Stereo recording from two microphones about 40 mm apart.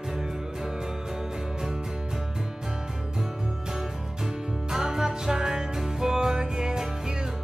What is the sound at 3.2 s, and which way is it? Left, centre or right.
Music, centre.